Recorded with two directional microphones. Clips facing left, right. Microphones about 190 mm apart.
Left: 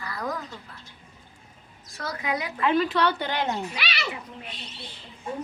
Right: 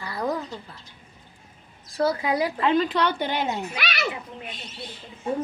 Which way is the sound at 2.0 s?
30° right (ahead or behind).